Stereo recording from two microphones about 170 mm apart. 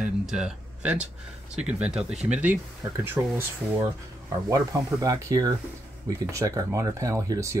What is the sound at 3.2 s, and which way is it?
Speech, 5° right (ahead or behind).